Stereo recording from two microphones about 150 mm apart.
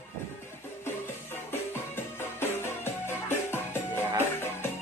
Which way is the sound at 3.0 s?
15° left (ahead or behind).